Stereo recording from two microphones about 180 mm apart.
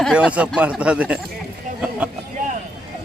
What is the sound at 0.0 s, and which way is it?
Speech, 5° right (ahead or behind).